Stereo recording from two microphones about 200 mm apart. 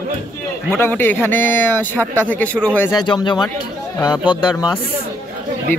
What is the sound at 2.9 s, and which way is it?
Speech, 20° left (ahead or behind).